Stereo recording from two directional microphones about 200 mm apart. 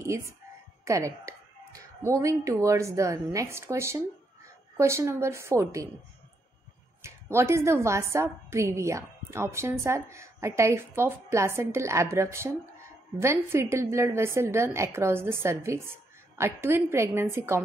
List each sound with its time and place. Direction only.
0.0 s a woman's voice: 15° right (ahead or behind)
7.0 s a woman's voice: 15° right (ahead or behind)